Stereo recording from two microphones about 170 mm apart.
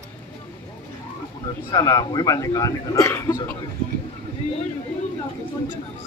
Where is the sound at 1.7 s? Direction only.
25° left (ahead or behind).